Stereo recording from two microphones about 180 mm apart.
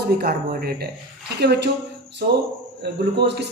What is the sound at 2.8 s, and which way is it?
Speech, 70° right (ahead or behind).